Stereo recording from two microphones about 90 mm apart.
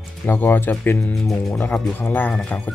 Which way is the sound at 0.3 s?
25° left (ahead or behind).